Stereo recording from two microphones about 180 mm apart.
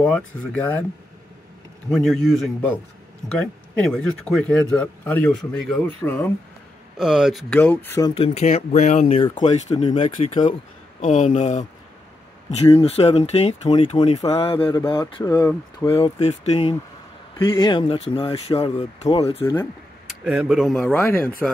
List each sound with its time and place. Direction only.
0.0 s speech: 10° left (ahead or behind)
1.9 s speech: centre (ahead or behind)
7.0 s speech: 5° right (ahead or behind); by 8.1 s 15° left (ahead or behind)
8.1 s speech: 35° left (ahead or behind)
9.9 s speech: 40° left (ahead or behind); by 16.0 s 20° left (ahead or behind)
16.0 s speech: 35° left (ahead or behind)
18.8 s speech: 20° left (ahead or behind)
20.1 s speech: 5° right (ahead or behind)